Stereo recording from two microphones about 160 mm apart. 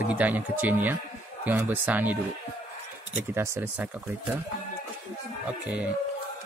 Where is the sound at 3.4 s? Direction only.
10° right (ahead or behind).